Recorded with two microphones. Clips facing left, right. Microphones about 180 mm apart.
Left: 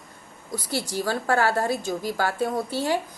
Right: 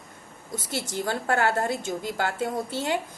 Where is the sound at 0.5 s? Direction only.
20° right (ahead or behind).